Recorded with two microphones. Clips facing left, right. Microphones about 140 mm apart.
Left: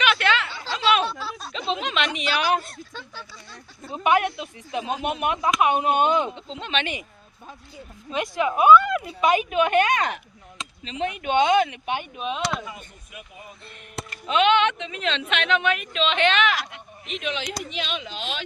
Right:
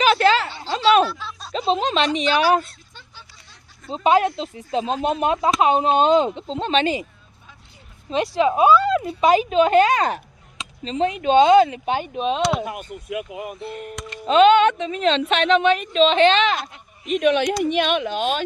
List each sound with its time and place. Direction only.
0.0 s a sound: 35° right (ahead or behind)
2.1 s a woman's voice: 35° right (ahead or behind)
3.8 s speech: 25° right (ahead or behind)
6.3 s a woman's voice: 35° right (ahead or behind)
8.1 s a woman's voice: 25° right (ahead or behind)
12.5 s speech: 65° right (ahead or behind); by 13.7 s 85° right
14.3 s a woman's voice: 40° right (ahead or behind)
17.1 s speech: 50° right (ahead or behind)